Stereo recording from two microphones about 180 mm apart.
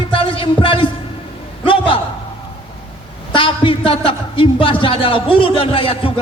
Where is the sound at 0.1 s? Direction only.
30° left (ahead or behind).